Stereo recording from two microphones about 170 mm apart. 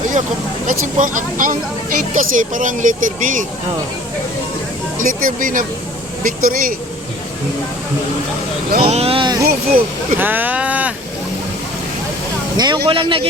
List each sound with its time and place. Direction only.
0.7 s speech: 50° right (ahead or behind)
4.9 s speech: 50° right (ahead or behind)
8.8 s speech: 35° right (ahead or behind)
9.5 s speech: 60° right (ahead or behind)
10.2 s speech: 10° right (ahead or behind)
12.5 s speech: 25° right (ahead or behind)